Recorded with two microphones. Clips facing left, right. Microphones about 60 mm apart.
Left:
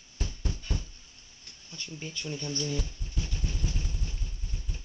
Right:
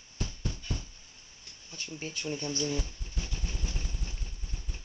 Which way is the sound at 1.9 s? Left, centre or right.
Right.